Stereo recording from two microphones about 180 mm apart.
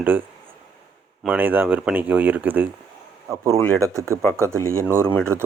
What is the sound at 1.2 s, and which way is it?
Speech, 10° right (ahead or behind).